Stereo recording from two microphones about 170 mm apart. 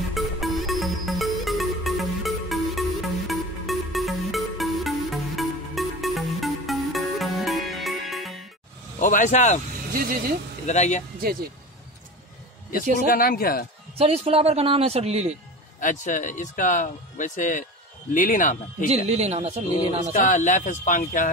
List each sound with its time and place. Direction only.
0.1 s music: centre (ahead or behind)
9.0 s speech: 50° left (ahead or behind)
9.9 s speech: 60° right (ahead or behind)
10.7 s speech: 45° left (ahead or behind)
12.9 s speech: 55° left (ahead or behind)
13.9 s speech: 35° right (ahead or behind)
15.8 s speech: 50° left (ahead or behind)
18.9 s speech: 40° right (ahead or behind)
20.1 s speech: 50° left (ahead or behind)